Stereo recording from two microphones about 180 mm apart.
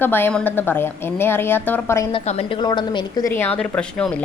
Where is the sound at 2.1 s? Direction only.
35° left (ahead or behind).